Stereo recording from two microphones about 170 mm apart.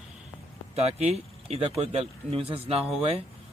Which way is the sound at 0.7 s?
40° right (ahead or behind).